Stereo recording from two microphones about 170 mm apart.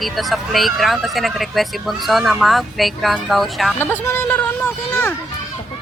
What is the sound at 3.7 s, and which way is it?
Speech, 15° left (ahead or behind).